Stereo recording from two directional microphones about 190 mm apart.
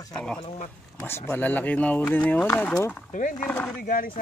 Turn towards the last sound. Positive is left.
turn(degrees=45)  # may be behind; listen again after turning